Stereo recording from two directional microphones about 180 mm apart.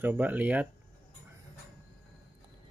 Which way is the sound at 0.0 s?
10° right (ahead or behind).